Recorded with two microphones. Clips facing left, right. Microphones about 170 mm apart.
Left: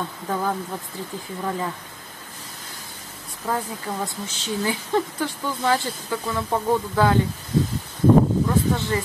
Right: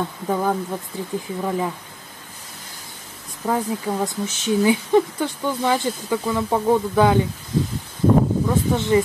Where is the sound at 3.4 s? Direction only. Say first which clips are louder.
Right 5 dB; 10° right (ahead or behind).